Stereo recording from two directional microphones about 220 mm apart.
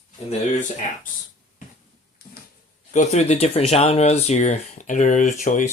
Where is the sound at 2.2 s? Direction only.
45° left (ahead or behind).